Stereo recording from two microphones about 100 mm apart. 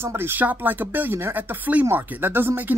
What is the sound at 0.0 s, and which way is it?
Speech, 25° right (ahead or behind).